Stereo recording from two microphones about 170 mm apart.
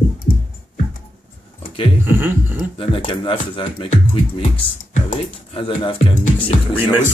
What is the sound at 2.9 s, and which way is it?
Music, 30° left (ahead or behind).